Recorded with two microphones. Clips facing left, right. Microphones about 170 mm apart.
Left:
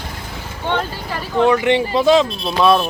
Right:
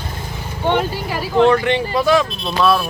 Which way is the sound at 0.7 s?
10° right (ahead or behind).